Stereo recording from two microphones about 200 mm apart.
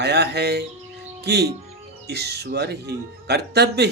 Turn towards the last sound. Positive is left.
turn(degrees=-55)  # may be behind; listen again after turning